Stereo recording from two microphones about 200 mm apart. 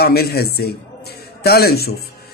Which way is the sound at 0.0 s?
55° left (ahead or behind).